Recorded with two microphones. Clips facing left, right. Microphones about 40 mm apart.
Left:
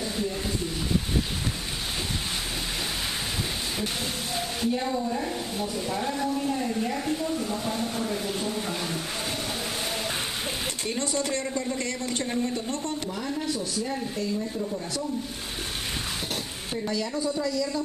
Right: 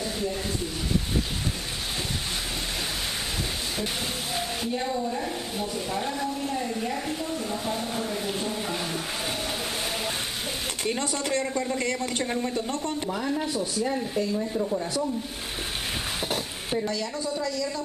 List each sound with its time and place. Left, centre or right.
4.4 s speech: centre
10.9 s speech: centre
16.8 s speech: centre